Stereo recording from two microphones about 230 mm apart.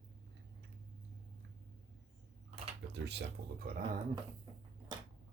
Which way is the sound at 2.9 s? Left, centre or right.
Right.